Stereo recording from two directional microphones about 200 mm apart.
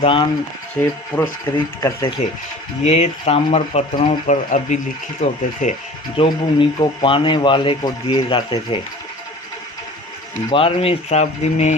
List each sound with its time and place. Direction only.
0.0 s speech: 25° left (ahead or behind)
0.8 s speech: 10° left (ahead or behind)
2.8 s speech: 35° left (ahead or behind)
6.1 s speech: 25° left (ahead or behind)
10.5 s speech: 25° left (ahead or behind)